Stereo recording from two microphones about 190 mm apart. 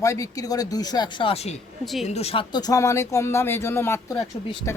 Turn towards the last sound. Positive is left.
turn(degrees=15)  # may be behind; listen again after turning